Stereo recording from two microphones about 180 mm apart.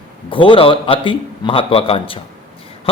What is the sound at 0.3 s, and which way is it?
A man's voice, 30° left (ahead or behind).